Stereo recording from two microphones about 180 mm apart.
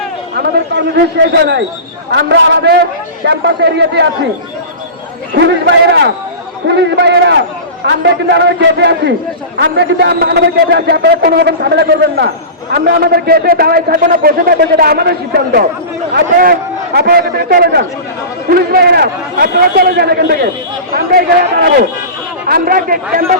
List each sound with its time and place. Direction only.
0.3 s a man's voice: 70° right (ahead or behind)
2.1 s a man's voice: 80° right
5.3 s a man's voice: 65° right (ahead or behind); by 23.4 s 50° right (ahead or behind)